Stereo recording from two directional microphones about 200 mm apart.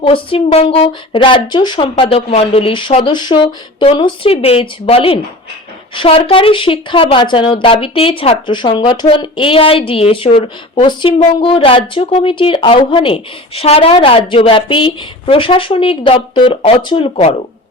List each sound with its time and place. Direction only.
0.0 s speech: 25° left (ahead or behind)